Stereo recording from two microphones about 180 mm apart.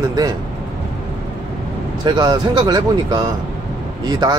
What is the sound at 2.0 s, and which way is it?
Speech, 25° right (ahead or behind).